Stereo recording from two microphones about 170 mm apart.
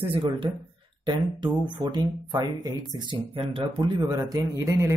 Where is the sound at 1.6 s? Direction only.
25° right (ahead or behind).